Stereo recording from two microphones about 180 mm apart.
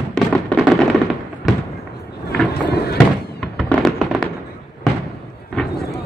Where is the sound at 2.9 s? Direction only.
5° left (ahead or behind).